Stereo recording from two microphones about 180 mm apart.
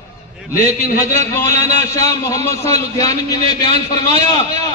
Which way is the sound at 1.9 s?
20° left (ahead or behind).